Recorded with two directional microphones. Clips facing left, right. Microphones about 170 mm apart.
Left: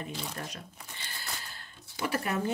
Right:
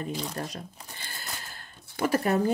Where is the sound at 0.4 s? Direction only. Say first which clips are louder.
Right 5 dB; 40° right (ahead or behind).